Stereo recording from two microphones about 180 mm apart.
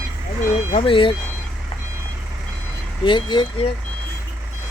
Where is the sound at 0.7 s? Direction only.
30° left (ahead or behind).